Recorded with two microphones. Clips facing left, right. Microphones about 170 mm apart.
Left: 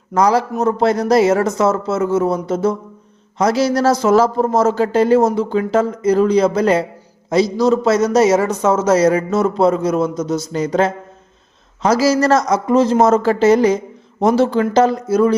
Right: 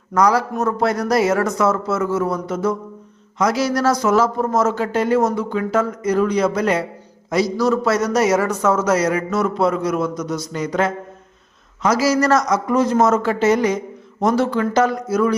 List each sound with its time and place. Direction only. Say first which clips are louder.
0.1 s a man's voice: left 2 dB; 25° left (ahead or behind)